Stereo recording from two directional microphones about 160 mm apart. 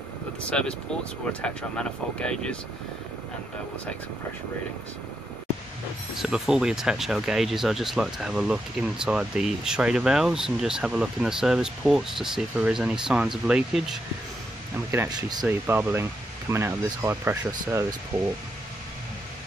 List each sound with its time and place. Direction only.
0.4 s speech: 5° left (ahead or behind)
6.1 s speech: 5° right (ahead or behind)
15.0 s speech: 25° right (ahead or behind)
15.4 s speech: 10° right (ahead or behind)